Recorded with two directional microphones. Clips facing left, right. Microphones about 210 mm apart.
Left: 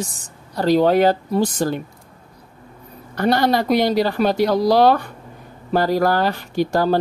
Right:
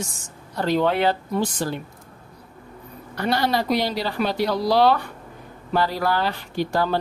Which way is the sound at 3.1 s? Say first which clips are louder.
Left 5 dB; 50° left (ahead or behind).